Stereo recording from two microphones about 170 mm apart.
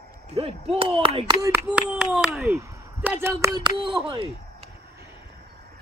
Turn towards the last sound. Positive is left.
turn(degrees=-30)  # may be behind; listen again after turning